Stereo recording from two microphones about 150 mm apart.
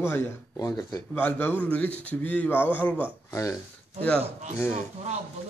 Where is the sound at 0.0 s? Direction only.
15° left (ahead or behind).